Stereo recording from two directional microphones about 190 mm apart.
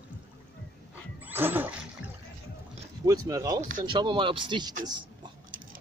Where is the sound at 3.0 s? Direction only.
15° right (ahead or behind).